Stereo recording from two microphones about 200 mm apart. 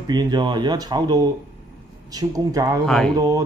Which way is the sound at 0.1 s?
20° right (ahead or behind).